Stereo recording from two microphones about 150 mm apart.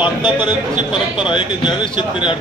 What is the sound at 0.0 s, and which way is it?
A man's voice, 30° left (ahead or behind).